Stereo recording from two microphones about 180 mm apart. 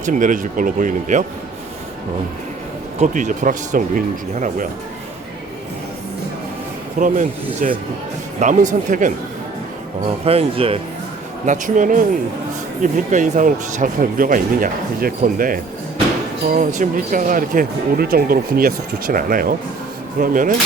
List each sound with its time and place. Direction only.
0.0 s speech: 45° right (ahead or behind)
3.0 s speech: 45° right (ahead or behind)
7.0 s speech: 45° right (ahead or behind)
10.2 s speech: 30° right (ahead or behind)
11.4 s speech: 45° right (ahead or behind)